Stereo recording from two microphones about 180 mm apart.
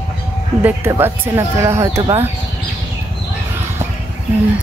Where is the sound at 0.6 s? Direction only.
10° right (ahead or behind).